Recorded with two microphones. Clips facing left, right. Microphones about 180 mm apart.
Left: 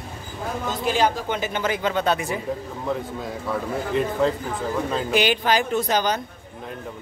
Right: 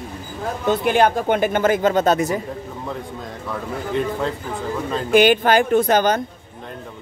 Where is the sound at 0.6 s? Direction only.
60° right (ahead or behind); by 2.4 s 40° right (ahead or behind).